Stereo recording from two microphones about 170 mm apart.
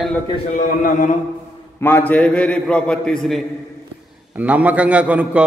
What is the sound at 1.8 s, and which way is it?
A man's voice, 10° left (ahead or behind).